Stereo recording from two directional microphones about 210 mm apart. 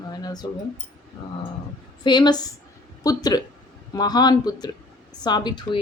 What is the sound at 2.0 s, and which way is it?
A woman's voice, 20° left (ahead or behind).